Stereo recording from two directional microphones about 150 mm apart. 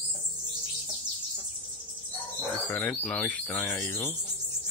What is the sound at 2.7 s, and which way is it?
Speech, 10° left (ahead or behind).